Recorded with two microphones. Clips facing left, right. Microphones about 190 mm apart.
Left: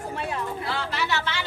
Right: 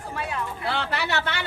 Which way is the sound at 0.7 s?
65° right (ahead or behind).